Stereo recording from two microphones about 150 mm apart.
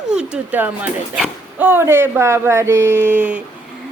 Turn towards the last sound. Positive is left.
turn(degrees=-10)  # may be behind; listen again after turning